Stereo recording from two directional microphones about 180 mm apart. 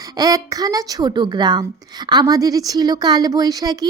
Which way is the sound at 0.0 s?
20° right (ahead or behind).